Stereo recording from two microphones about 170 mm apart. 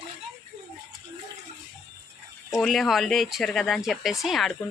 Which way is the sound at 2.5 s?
Centre (ahead or behind).